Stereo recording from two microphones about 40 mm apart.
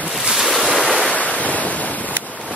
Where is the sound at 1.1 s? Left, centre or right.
Left.